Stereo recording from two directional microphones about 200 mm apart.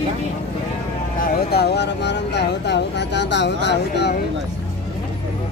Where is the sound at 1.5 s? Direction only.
55° left (ahead or behind).